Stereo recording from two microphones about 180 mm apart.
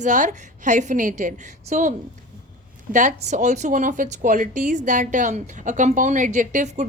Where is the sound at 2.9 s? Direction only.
45° right (ahead or behind).